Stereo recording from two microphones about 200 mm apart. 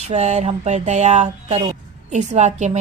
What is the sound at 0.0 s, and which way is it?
A woman's voice, 35° right (ahead or behind).